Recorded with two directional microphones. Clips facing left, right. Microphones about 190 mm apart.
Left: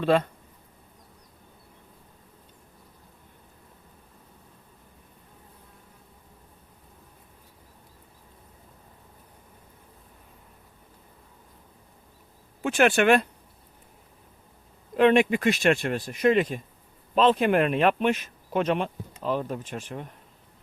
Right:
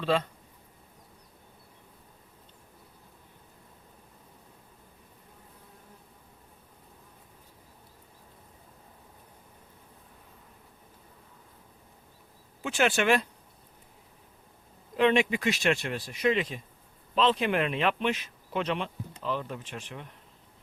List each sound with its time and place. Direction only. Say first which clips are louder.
0.0 s speech: left 5 dB; 55° left (ahead or behind)
12.6 s speech: left 5 dB; 55° left (ahead or behind)
14.9 s speech: left 5 dB; 50° left (ahead or behind)